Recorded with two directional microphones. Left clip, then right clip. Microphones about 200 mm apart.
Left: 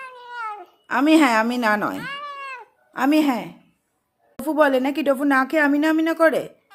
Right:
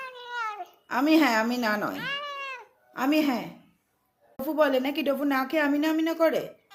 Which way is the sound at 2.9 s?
60° left (ahead or behind).